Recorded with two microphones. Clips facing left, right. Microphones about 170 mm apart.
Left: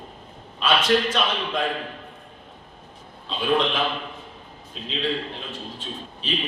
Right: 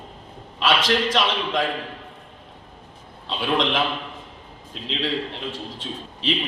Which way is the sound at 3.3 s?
90° right.